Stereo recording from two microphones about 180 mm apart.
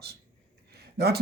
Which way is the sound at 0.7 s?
65° right (ahead or behind).